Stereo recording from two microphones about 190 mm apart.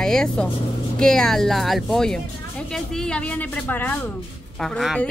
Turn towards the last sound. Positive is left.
turn(degrees=0)  # may be behind; listen again after turning